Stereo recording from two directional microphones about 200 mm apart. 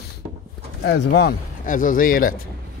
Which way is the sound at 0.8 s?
55° left (ahead or behind).